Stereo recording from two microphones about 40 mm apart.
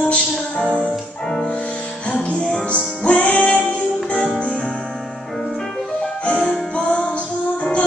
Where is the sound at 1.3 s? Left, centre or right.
Centre.